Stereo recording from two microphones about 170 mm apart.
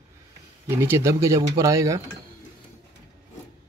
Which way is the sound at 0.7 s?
15° right (ahead or behind).